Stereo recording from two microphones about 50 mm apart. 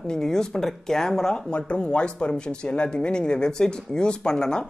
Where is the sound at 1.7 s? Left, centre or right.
Left.